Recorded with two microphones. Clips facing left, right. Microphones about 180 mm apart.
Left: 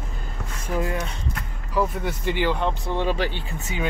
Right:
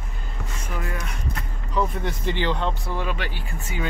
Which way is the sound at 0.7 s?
25° left (ahead or behind).